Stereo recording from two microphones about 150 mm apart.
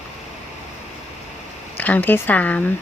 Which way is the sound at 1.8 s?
10° left (ahead or behind).